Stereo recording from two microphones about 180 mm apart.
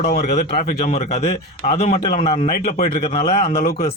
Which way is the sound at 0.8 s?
40° left (ahead or behind).